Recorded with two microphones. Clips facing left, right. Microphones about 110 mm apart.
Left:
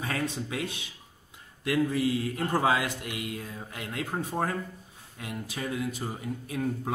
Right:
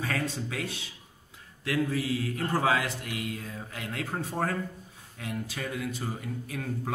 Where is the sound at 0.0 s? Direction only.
20° left (ahead or behind).